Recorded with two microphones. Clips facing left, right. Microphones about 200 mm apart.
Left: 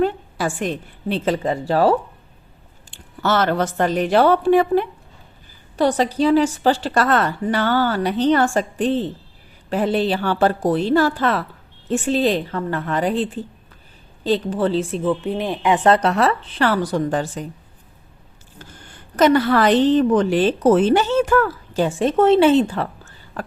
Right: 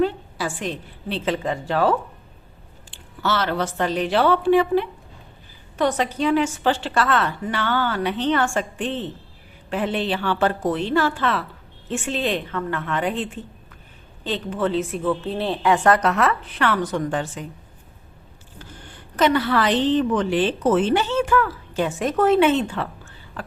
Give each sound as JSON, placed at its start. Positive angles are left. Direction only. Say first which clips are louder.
{"t": 0.0, "sound": "a woman's voice", "louder": "left 2 dB", "side_deg": 50}
{"t": 2.9, "sound": "speech", "louder": "left 4 dB", "side_deg": 45}
{"t": 5.7, "sound": "a woman's voice", "louder": "left 4 dB", "side_deg": 35}
{"t": 15.0, "sound": "speech", "louder": "left 2 dB", "side_deg": 15}
{"t": 18.6, "sound": "a woman's voice", "louder": "right 1 dB", "side_deg": 45}